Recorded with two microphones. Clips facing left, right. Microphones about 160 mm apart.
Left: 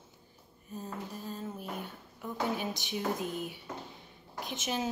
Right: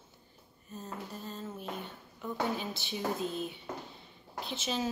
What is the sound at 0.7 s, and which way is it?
Speech, 10° left (ahead or behind).